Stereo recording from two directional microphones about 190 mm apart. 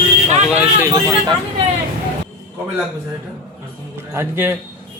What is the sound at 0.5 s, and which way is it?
Speech, 5° right (ahead or behind).